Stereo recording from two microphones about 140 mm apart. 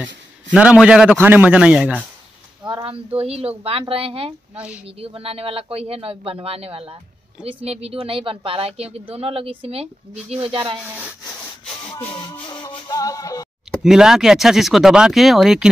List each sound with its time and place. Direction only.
0.0 s a man's voice: 10° right (ahead or behind)
2.7 s a sound: 40° right (ahead or behind)
3.2 s speech: 45° right (ahead or behind)
10.8 s speech: 10° right (ahead or behind)
11.6 s music: 40° left (ahead or behind)
13.7 s speech: 5° right (ahead or behind)